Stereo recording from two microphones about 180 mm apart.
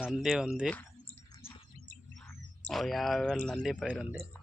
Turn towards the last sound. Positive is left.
turn(degrees=0)  # may be behind; listen again after turning